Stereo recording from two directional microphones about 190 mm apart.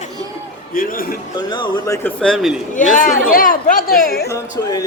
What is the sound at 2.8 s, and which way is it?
Speech, 45° left (ahead or behind).